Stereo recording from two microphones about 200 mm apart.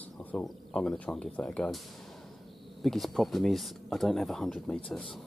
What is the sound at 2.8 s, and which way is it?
Speech, centre (ahead or behind).